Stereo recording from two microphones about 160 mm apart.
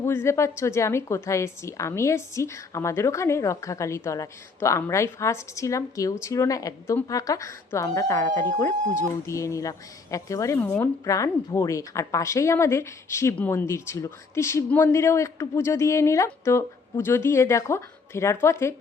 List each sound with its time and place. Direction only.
0.0 s a woman's voice: 15° left (ahead or behind)